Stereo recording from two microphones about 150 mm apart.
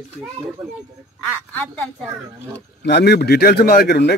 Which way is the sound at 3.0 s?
90° left.